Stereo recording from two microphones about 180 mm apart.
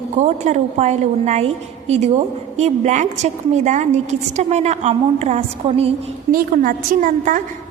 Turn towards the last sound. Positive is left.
turn(degrees=-50)  # may be behind; listen again after turning